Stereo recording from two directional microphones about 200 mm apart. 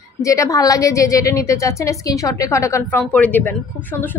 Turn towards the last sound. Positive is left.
turn(degrees=10)  # may be behind; listen again after turning